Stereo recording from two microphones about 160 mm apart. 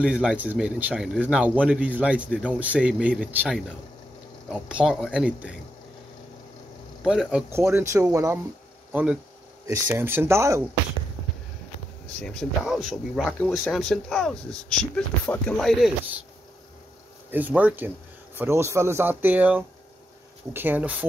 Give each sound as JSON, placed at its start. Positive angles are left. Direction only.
{"t": 0.0, "sound": "a man's voice", "side_deg": -5}
{"t": 7.0, "sound": "a man's voice", "side_deg": -5}
{"t": 8.9, "sound": "speech", "side_deg": -5}
{"t": 9.7, "sound": "a man's voice", "side_deg": -20}
{"t": 12.2, "sound": "speech", "side_deg": 5}
{"t": 17.3, "sound": "a man's voice", "side_deg": -10}